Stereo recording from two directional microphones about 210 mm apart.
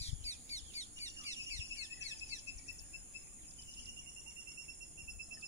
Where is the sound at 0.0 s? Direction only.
30° left (ahead or behind).